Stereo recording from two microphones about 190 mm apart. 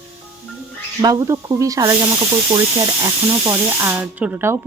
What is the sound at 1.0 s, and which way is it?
Speech, 15° right (ahead or behind).